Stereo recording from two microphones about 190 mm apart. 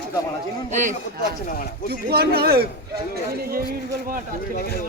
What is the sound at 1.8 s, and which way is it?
A man's voice, 55° right (ahead or behind).